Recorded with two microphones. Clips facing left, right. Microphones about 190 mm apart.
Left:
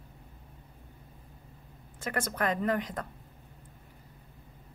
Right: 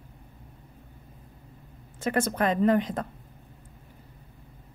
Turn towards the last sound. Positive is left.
turn(degrees=-25)  # may be behind; listen again after turning